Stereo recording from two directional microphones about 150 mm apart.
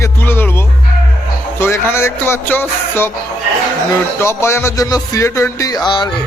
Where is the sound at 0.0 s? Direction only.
15° left (ahead or behind).